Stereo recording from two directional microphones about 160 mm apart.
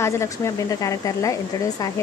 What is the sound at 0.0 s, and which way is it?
Speech, 20° left (ahead or behind).